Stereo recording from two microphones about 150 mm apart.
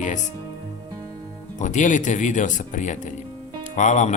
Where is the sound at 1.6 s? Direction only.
55° left (ahead or behind).